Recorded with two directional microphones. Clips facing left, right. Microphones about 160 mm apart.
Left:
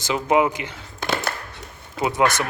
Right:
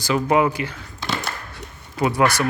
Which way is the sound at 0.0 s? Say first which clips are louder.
Right 1 dB; 20° left (ahead or behind).